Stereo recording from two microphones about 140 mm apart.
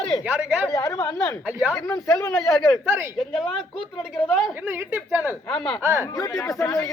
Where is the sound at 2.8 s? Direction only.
15° right (ahead or behind).